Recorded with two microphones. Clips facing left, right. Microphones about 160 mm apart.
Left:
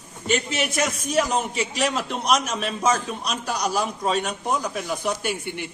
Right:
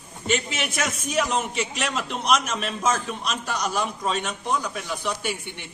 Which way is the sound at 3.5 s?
40° left (ahead or behind).